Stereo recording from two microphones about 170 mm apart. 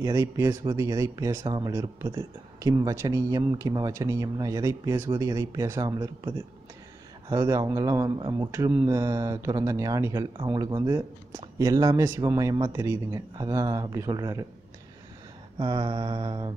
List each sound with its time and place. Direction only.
0.0 s speech: 20° right (ahead or behind)
15.6 s speech: 25° right (ahead or behind)